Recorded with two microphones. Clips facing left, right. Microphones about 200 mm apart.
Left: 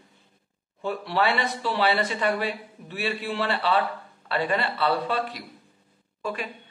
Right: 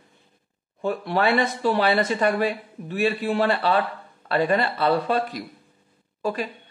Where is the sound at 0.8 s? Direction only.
45° right (ahead or behind).